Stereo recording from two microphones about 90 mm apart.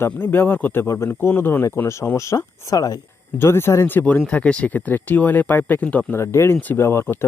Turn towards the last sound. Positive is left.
turn(degrees=25)  # may be behind; listen again after turning